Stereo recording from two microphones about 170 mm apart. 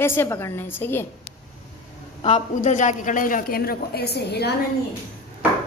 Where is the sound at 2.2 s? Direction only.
40° left (ahead or behind); by 4.5 s 70° left (ahead or behind).